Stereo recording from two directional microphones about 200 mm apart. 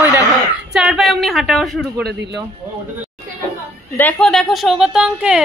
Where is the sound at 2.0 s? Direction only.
55° right (ahead or behind).